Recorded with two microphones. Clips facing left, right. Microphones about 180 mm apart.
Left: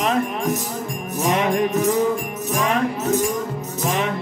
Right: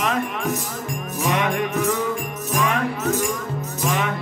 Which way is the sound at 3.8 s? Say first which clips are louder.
Left 1 dB; 35° left (ahead or behind).